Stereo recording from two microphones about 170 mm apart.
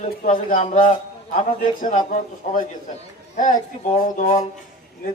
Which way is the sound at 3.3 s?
50° left (ahead or behind).